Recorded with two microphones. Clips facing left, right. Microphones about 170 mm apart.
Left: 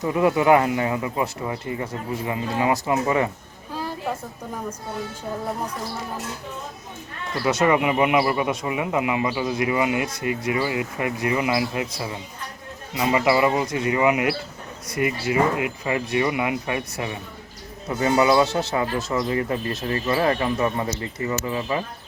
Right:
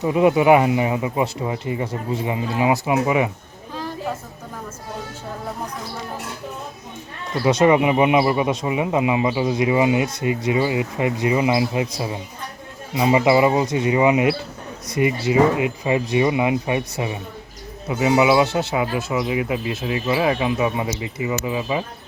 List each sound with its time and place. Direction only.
0.0 s speech: 20° right (ahead or behind)
7.4 s speech: 25° right (ahead or behind)
17.8 s speech: 10° right (ahead or behind)